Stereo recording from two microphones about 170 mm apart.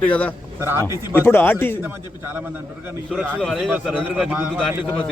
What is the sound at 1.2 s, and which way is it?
Speech, 10° left (ahead or behind).